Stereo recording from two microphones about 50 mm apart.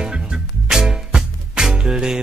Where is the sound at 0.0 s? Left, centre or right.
Centre.